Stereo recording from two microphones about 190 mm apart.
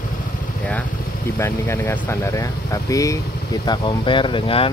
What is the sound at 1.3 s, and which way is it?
Speech, 15° left (ahead or behind).